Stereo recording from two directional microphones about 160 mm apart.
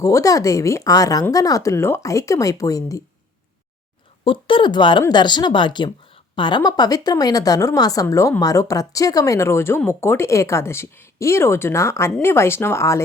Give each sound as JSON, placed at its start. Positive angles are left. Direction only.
{"t": 0.0, "sound": "speech", "side_deg": 20}
{"t": 4.2, "sound": "speech", "side_deg": 30}